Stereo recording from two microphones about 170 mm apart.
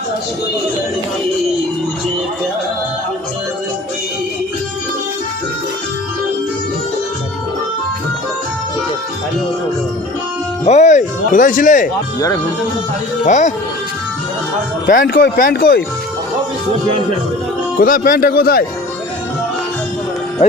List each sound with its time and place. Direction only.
10.7 s speech: 45° left (ahead or behind)
13.2 s speech: 45° left (ahead or behind)
14.8 s speech: 60° left (ahead or behind)
17.7 s speech: 55° left (ahead or behind)